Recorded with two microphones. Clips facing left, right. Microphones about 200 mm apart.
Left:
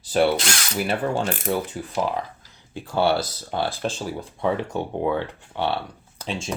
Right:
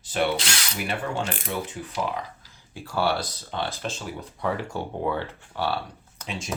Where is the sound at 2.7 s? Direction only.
20° left (ahead or behind).